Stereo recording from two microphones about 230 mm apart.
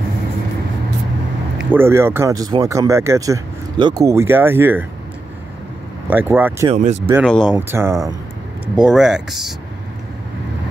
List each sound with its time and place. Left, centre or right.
1.7 s speech: centre
6.0 s speech: centre
6.7 s speech: right
7.2 s speech: centre
7.5 s speech: centre
8.7 s speech: centre